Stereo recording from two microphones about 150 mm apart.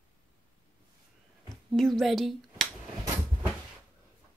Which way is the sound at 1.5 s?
Centre (ahead or behind).